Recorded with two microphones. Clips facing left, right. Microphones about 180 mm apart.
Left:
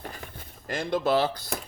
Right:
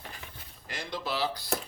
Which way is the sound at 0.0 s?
50° left (ahead or behind).